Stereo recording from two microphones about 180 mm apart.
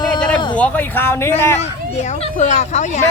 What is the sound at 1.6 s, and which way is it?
Speech, 40° left (ahead or behind).